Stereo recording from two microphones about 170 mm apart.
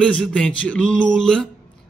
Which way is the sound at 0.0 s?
5° left (ahead or behind).